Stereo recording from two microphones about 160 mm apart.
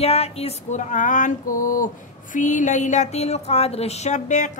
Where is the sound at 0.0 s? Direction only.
40° left (ahead or behind).